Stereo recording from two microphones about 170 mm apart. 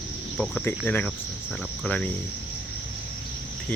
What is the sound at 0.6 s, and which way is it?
Speech, 10° left (ahead or behind).